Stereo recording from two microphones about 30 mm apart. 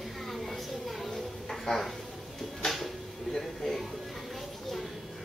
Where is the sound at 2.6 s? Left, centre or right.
Left.